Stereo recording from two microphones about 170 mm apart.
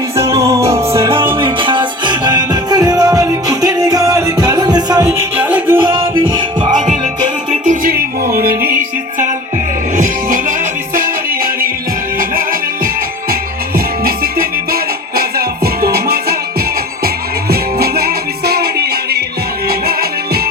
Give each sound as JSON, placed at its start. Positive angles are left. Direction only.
{"t": 0.2, "sound": "music", "side_deg": -15}
{"t": 1.4, "sound": "music", "side_deg": -30}
{"t": 5.0, "sound": "music", "side_deg": -10}
{"t": 5.8, "sound": "music", "side_deg": -30}
{"t": 7.5, "sound": "music", "side_deg": -50}
{"t": 13.7, "sound": "music", "side_deg": -60}
{"t": 17.5, "sound": "music", "side_deg": -65}